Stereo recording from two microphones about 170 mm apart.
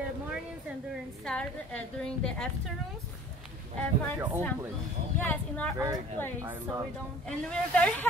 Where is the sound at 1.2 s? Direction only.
5° left (ahead or behind).